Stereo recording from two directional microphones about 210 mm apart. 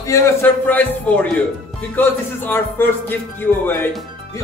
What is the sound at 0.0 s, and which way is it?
Speech, 10° left (ahead or behind).